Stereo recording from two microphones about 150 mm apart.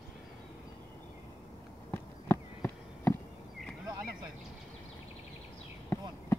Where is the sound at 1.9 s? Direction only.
15° left (ahead or behind).